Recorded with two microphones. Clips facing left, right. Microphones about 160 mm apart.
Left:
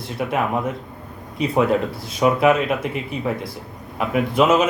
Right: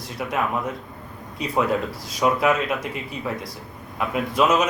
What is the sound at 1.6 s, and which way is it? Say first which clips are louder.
Speech: left 4 dB; 25° left (ahead or behind).